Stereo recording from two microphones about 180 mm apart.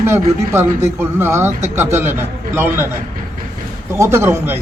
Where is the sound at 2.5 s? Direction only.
10° right (ahead or behind).